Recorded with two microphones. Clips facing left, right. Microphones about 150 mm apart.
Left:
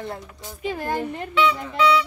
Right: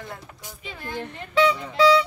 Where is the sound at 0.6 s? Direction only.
45° left (ahead or behind).